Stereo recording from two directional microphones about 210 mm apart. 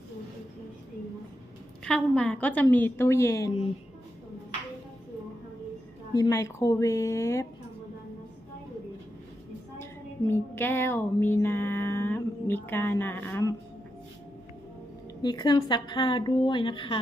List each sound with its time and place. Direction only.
1.8 s a woman's voice: 5° left (ahead or behind)
6.1 s a woman's voice: 15° left (ahead or behind)
9.8 s music: 10° left (ahead or behind)
15.2 s a woman's voice: 20° left (ahead or behind)